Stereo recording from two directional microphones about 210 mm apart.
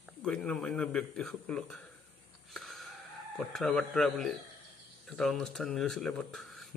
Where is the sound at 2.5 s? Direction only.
Centre (ahead or behind).